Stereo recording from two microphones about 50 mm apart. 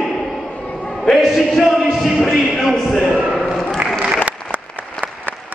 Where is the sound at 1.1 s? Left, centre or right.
Centre.